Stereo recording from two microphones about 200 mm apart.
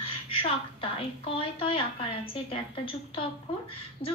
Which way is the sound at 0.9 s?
25° left (ahead or behind).